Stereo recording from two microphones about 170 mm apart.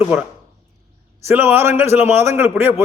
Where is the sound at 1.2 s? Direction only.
10° right (ahead or behind).